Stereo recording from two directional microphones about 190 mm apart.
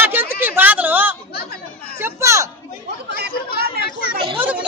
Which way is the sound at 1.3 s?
55° left (ahead or behind).